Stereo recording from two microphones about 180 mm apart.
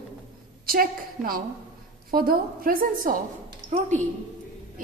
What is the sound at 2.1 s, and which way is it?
A woman's voice, 55° right (ahead or behind).